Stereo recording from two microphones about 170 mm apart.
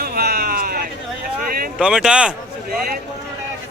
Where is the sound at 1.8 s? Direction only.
5° right (ahead or behind).